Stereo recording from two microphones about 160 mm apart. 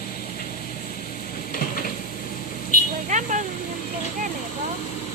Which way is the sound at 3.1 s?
50° right (ahead or behind).